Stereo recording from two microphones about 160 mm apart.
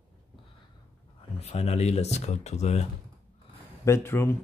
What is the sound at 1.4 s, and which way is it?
Speech, 40° left (ahead or behind).